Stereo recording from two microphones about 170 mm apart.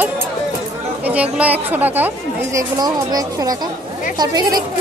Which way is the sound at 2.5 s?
20° right (ahead or behind).